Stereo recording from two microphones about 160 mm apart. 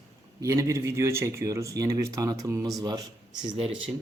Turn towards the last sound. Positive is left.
turn(degrees=-30)  # may be behind; listen again after turning